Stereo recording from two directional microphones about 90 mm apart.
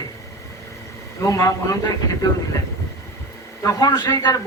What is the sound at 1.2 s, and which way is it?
Speech, 35° left (ahead or behind).